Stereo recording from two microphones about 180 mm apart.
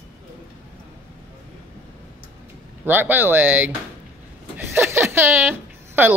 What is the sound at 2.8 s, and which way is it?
Speech, 10° right (ahead or behind).